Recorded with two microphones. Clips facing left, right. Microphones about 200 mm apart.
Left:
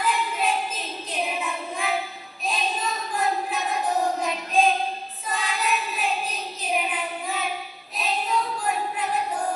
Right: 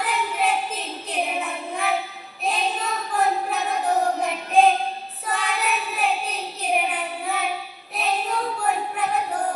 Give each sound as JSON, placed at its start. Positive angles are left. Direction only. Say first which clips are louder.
{"t": 0.0, "sound": "child singing", "louder": "right 1 dB", "side_deg": -65}
{"t": 3.2, "sound": "a sound", "louder": "right 4 dB", "side_deg": -65}
{"t": 5.2, "sound": "child singing", "louder": "right 2 dB", "side_deg": -60}